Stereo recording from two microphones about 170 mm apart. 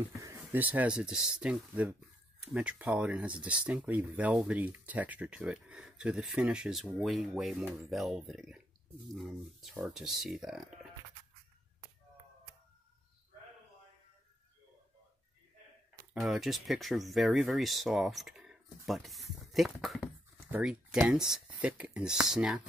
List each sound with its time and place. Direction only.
0.2 s speech: 15° right (ahead or behind)
16.1 s speech: centre (ahead or behind)